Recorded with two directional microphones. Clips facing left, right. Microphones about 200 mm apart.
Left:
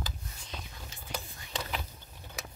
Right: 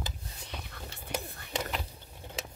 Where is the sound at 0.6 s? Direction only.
65° right (ahead or behind).